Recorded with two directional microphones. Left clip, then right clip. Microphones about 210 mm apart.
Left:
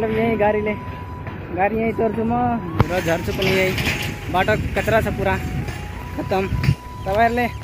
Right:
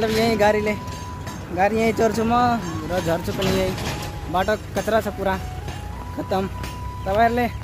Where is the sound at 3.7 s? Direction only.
30° right (ahead or behind).